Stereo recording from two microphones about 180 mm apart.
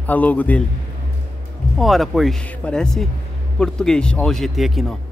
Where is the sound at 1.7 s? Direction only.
Centre (ahead or behind).